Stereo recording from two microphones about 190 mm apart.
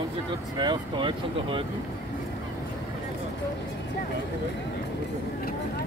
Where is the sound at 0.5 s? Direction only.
25° right (ahead or behind).